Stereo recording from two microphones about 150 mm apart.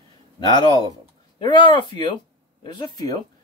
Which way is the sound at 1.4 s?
30° left (ahead or behind).